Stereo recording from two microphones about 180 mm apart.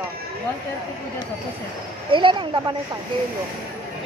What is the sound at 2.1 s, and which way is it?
Speech, 25° right (ahead or behind).